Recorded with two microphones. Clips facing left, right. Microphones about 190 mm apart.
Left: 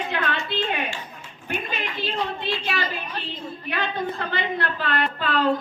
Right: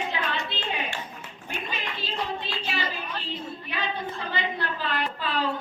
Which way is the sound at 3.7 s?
60° left (ahead or behind).